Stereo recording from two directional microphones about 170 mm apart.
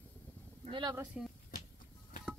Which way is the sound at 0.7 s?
25° right (ahead or behind).